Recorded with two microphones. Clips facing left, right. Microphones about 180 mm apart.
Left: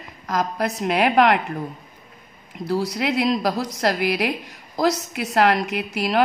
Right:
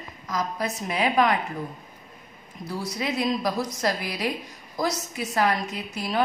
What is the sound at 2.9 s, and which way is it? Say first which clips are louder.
A woman's voice: left 1 dB; 70° left (ahead or behind).